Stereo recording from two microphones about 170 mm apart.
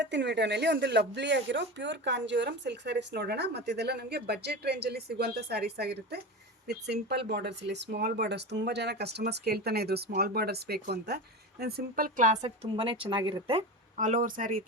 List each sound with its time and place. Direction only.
0.0 s speech: 90° right; by 11.2 s 70° right (ahead or behind)
11.6 s a woman's voice: 55° right (ahead or behind)
12.7 s speech: 30° right (ahead or behind); by 14.6 s 55° right (ahead or behind)